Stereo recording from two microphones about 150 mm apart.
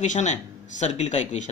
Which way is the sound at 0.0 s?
55° left (ahead or behind).